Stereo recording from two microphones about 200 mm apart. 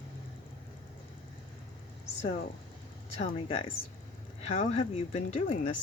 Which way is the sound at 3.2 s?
25° left (ahead or behind).